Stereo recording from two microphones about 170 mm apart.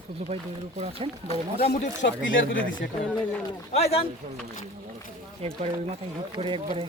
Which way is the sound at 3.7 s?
40° left (ahead or behind).